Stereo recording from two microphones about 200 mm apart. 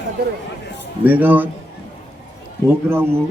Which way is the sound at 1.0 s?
10° right (ahead or behind).